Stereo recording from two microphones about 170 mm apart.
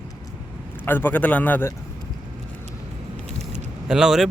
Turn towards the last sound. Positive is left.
turn(degrees=-5)  # may be behind; listen again after turning